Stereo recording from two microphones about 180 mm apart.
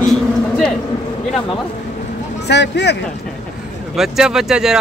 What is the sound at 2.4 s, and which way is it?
Speech, 70° left (ahead or behind).